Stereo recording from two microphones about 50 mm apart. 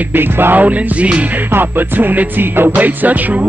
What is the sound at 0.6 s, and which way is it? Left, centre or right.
Music, right.